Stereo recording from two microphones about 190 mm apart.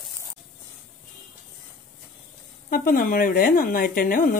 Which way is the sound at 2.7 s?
45° left (ahead or behind).